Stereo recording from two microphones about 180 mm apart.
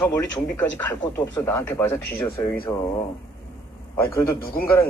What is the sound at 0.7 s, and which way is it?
Speech, 10° left (ahead or behind).